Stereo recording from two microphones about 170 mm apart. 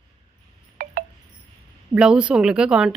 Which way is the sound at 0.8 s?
50° right (ahead or behind).